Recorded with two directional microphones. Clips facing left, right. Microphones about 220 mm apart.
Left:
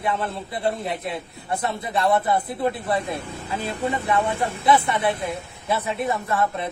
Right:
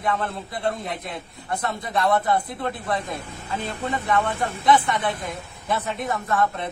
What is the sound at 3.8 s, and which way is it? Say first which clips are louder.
Speech: left 1 dB; 10° left (ahead or behind).